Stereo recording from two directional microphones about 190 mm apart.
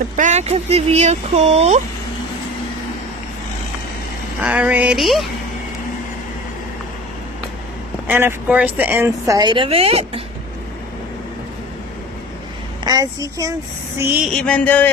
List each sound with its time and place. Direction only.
0.1 s speech: 35° right (ahead or behind)
4.4 s speech: 10° right (ahead or behind)
8.1 s speech: 10° right (ahead or behind); by 10.2 s 30° right (ahead or behind)
12.8 s a woman's voice: 20° right (ahead or behind)
14.3 s a sound: 5° left (ahead or behind)